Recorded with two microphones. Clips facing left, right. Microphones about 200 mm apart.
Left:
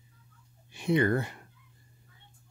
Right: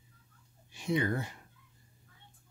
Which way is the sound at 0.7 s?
60° left (ahead or behind).